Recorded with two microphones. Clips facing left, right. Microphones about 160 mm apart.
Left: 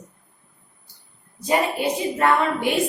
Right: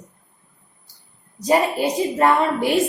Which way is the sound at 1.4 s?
35° right (ahead or behind).